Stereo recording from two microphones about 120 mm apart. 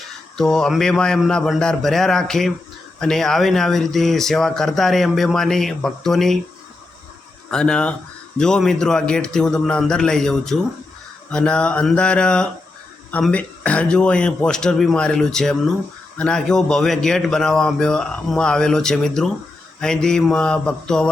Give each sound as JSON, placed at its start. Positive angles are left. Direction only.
{"t": 0.3, "sound": "speech", "side_deg": 5}
{"t": 7.5, "sound": "speech", "side_deg": 5}